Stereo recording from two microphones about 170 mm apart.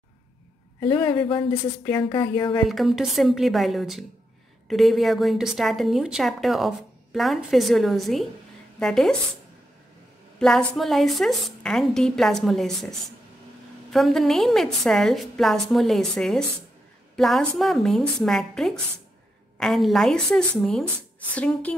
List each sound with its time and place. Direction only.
0.7 s a man's voice: 25° left (ahead or behind)
2.7 s a woman's voice: centre (ahead or behind)
10.4 s a woman's voice: 5° left (ahead or behind)